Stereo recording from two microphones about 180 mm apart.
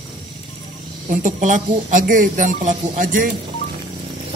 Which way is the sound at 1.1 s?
45° right (ahead or behind).